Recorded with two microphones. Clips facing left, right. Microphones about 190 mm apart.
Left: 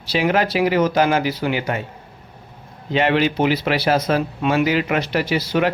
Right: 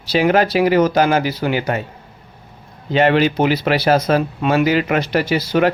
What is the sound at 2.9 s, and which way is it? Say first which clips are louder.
Speech: right 3 dB; 40° right (ahead or behind).